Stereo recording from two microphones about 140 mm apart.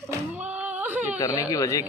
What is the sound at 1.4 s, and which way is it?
Speech, 25° left (ahead or behind).